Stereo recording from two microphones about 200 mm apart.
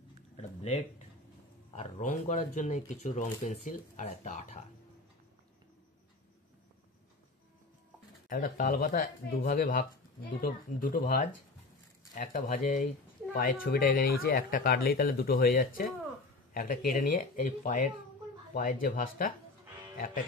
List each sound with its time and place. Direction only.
0.4 s a sound: 30° left (ahead or behind)
1.7 s speech: 35° left (ahead or behind)
8.3 s speech: 45° left (ahead or behind)